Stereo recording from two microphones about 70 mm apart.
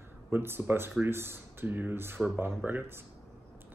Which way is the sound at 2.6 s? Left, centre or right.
Right.